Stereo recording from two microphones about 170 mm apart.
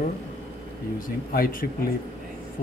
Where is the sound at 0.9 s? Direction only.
60° left (ahead or behind).